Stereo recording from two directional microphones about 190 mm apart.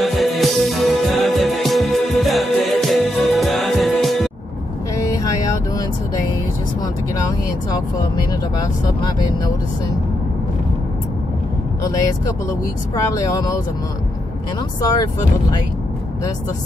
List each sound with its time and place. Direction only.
0.0 s music: centre (ahead or behind)
8.3 s speech: 20° left (ahead or behind)
13.1 s speech: 20° left (ahead or behind)
14.8 s speech: 20° left (ahead or behind)